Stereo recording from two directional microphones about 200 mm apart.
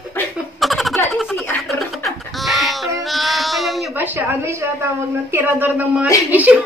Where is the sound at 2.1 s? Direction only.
Centre (ahead or behind).